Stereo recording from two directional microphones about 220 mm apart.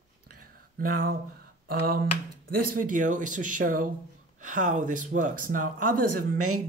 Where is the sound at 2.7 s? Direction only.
35° right (ahead or behind).